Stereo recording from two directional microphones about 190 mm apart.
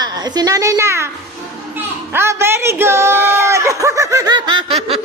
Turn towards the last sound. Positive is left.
turn(degrees=-30)  # may be behind; listen again after turning